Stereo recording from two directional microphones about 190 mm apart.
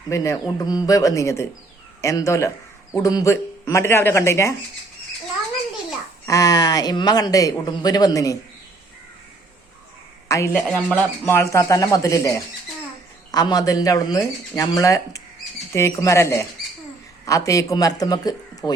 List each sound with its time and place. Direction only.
0.1 s speech: 15° left (ahead or behind)
6.2 s speech: 20° left (ahead or behind)
10.2 s a woman's voice: 15° left (ahead or behind)